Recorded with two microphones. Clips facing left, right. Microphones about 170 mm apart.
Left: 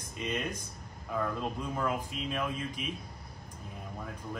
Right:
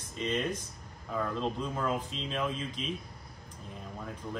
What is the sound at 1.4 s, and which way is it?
Speech, 5° left (ahead or behind).